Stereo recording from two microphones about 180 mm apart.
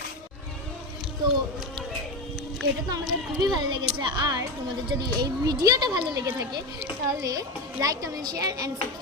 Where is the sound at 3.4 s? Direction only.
25° right (ahead or behind).